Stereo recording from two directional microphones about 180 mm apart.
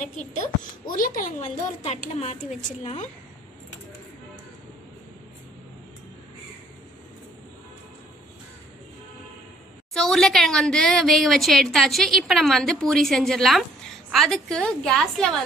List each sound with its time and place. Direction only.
0.8 s speech: 50° left (ahead or behind)
9.9 s a woman's voice: centre (ahead or behind)